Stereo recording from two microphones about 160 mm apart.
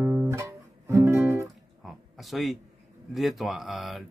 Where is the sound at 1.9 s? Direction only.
Centre (ahead or behind).